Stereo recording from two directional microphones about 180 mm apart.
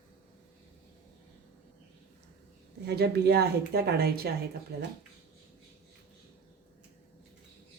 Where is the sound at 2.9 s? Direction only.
65° right (ahead or behind).